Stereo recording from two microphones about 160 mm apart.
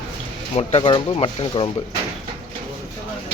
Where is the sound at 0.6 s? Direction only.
35° left (ahead or behind).